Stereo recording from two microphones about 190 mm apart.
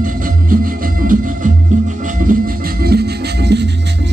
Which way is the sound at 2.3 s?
45° right (ahead or behind).